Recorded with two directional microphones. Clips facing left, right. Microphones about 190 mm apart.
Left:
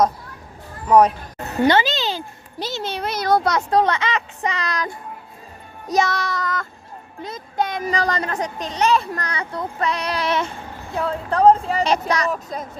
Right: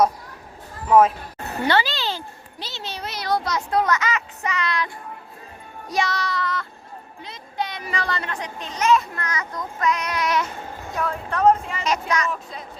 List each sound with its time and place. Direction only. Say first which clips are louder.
0.9 s speech: left 1 dB; centre (ahead or behind)
1.6 s a sound: left 4 dB; 20° left (ahead or behind)
2.6 s a sound: left 8 dB; 45° left (ahead or behind)
3.7 s speech: left 1 dB; 30° left (ahead or behind)
5.9 s child singing: left 4 dB; 45° left (ahead or behind)
7.2 s speech: left 6 dB; 45° left (ahead or behind)